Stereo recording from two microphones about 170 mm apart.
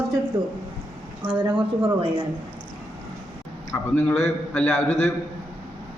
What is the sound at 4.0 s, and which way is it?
A man's voice, 15° left (ahead or behind).